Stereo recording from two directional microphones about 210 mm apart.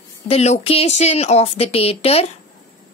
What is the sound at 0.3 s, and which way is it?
Speech, 30° left (ahead or behind).